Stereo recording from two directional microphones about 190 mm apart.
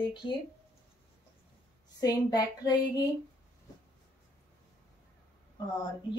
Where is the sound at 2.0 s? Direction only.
20° left (ahead or behind).